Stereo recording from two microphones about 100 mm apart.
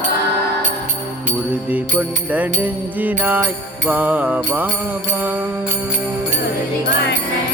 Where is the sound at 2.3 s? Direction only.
15° right (ahead or behind).